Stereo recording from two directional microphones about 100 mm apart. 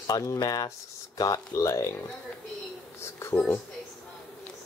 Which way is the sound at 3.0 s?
25° left (ahead or behind).